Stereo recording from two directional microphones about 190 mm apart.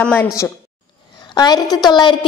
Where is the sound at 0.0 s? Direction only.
10° left (ahead or behind).